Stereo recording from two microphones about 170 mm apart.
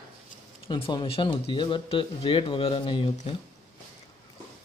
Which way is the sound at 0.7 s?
30° left (ahead or behind).